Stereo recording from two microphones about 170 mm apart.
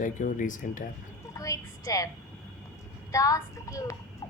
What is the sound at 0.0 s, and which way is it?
Speech, 50° left (ahead or behind).